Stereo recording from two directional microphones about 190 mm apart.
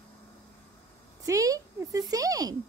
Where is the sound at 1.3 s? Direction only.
15° right (ahead or behind).